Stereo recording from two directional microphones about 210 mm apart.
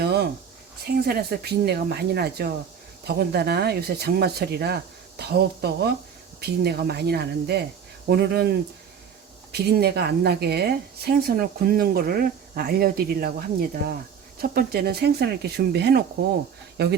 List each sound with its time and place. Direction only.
0.0 s a sound: 50° right (ahead or behind)
1.0 s speech: 50° right (ahead or behind)
9.5 s speech: 50° right (ahead or behind)